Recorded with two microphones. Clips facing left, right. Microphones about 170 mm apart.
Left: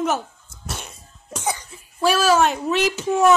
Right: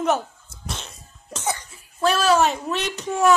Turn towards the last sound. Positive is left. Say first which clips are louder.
# left 6 dB
turn(degrees=0)  # may be behind; listen again after turning